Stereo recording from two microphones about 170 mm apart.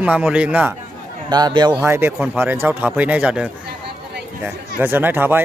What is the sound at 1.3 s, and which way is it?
Speech, 25° right (ahead or behind).